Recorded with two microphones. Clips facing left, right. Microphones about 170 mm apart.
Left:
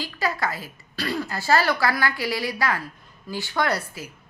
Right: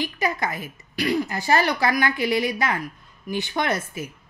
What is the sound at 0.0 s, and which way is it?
A woman's voice, 20° right (ahead or behind).